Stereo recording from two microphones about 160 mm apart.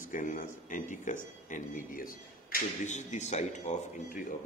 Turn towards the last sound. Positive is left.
turn(degrees=50)  # may be behind; listen again after turning